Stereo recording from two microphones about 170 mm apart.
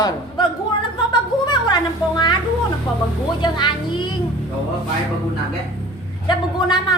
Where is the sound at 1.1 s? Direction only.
25° left (ahead or behind).